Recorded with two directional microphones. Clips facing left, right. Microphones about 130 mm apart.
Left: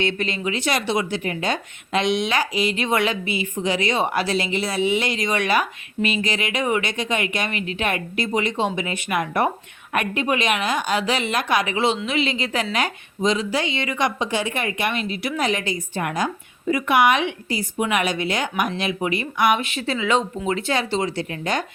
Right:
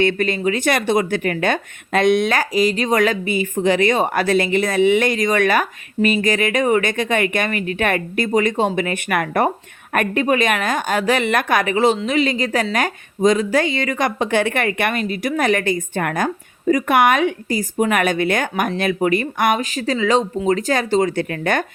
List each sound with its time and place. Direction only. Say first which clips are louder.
0.0 s speech: right 6 dB; 50° right (ahead or behind)